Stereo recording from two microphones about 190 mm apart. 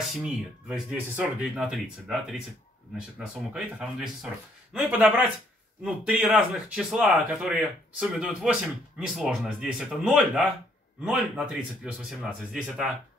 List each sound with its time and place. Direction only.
0.1 s speech: 5° right (ahead or behind)